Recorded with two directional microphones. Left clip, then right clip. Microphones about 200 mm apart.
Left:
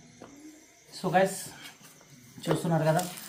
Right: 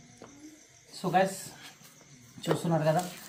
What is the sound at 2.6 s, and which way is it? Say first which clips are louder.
Speech: left 1 dB; 15° left (ahead or behind).